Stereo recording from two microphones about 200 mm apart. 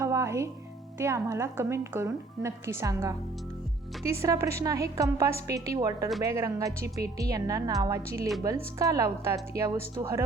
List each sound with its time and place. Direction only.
0.0 s music: 15° right (ahead or behind)
0.9 s a woman's voice: 15° right (ahead or behind)
4.2 s a woman's voice: 15° right (ahead or behind)